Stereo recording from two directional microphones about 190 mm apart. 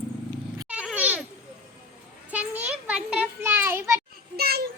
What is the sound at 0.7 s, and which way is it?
Cat, 5° right (ahead or behind).